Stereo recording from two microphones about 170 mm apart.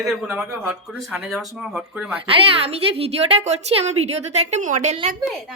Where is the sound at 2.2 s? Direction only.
35° right (ahead or behind).